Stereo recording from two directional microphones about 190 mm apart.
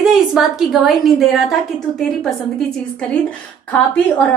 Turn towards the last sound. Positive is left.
turn(degrees=5)  # may be behind; listen again after turning